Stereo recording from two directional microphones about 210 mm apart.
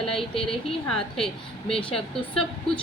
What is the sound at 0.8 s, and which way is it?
Speech, centre (ahead or behind).